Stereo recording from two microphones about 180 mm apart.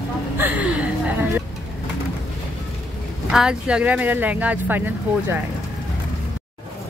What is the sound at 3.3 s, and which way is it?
Speech, 5° right (ahead or behind).